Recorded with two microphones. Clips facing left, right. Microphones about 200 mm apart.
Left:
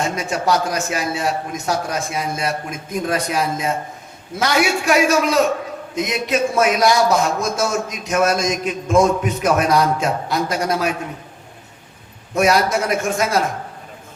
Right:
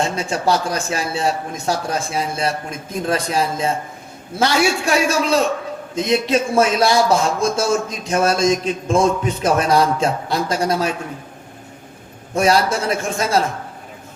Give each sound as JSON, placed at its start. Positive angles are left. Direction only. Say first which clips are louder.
{"t": 0.0, "sound": "a man's voice", "louder": "right 1 dB", "side_deg": -30}
{"t": 12.3, "sound": "a man's voice", "louder": "even", "side_deg": -30}